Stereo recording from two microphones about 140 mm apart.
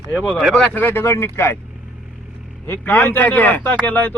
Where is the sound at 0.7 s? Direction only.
15° left (ahead or behind).